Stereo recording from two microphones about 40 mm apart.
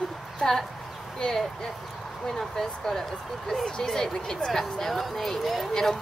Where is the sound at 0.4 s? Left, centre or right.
Centre.